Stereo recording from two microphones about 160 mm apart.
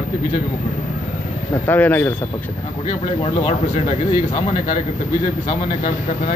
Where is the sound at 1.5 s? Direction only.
10° left (ahead or behind).